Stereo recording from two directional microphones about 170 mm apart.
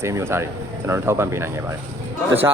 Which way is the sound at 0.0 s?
15° right (ahead or behind).